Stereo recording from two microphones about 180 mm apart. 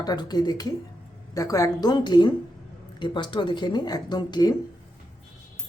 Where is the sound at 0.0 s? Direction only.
20° left (ahead or behind).